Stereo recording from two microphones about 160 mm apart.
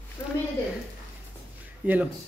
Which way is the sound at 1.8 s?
10° right (ahead or behind).